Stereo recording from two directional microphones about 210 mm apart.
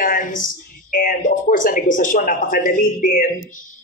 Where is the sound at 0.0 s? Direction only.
40° left (ahead or behind).